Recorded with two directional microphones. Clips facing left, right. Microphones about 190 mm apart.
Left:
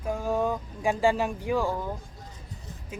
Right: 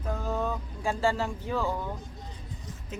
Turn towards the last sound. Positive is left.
turn(degrees=10)  # may be behind; listen again after turning